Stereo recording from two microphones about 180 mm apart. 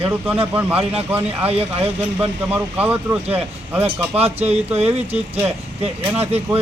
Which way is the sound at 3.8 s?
35° right (ahead or behind).